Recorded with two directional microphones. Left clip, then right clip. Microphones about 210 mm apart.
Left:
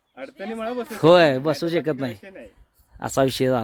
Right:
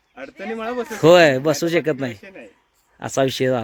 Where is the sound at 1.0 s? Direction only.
5° right (ahead or behind).